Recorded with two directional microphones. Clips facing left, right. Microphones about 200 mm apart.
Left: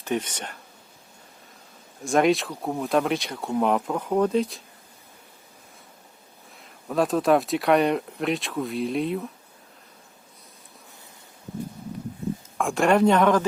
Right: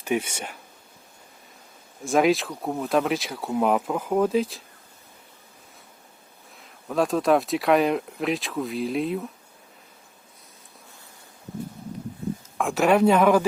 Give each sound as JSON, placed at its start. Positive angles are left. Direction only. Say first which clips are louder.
{"t": 0.0, "sound": "speech", "louder": "right 2 dB", "side_deg": -10}
{"t": 2.0, "sound": "speech", "louder": "even", "side_deg": 0}
{"t": 6.6, "sound": "speech", "louder": "even", "side_deg": 0}
{"t": 12.5, "sound": "speech", "louder": "even", "side_deg": -5}